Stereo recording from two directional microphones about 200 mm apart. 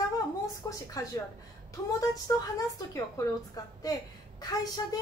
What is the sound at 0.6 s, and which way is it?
A woman's voice, 15° left (ahead or behind).